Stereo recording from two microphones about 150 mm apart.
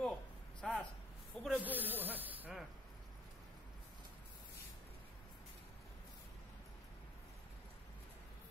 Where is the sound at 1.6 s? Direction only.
10° right (ahead or behind).